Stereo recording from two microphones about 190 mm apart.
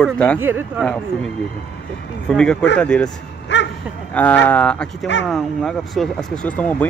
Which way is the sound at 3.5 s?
70° left (ahead or behind).